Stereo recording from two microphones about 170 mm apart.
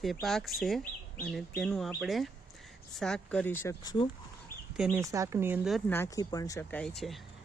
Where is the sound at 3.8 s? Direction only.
25° left (ahead or behind).